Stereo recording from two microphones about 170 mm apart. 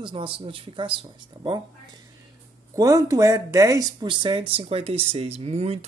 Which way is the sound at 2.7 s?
20° right (ahead or behind).